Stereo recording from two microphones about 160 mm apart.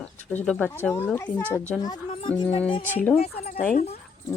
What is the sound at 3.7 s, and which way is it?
Speech, 40° left (ahead or behind).